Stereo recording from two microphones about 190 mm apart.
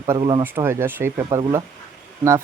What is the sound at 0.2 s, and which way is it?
Speech, 25° right (ahead or behind).